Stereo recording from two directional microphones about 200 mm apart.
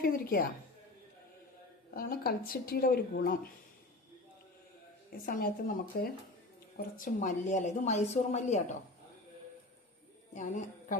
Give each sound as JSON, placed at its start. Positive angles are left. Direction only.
{"t": 0.0, "sound": "a woman's voice", "side_deg": 50}
{"t": 1.9, "sound": "a woman's voice", "side_deg": 50}
{"t": 5.2, "sound": "a woman's voice", "side_deg": 45}
{"t": 10.3, "sound": "a woman's voice", "side_deg": 40}